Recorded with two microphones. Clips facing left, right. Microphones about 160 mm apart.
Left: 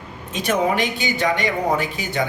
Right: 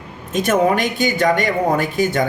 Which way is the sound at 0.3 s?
45° right (ahead or behind).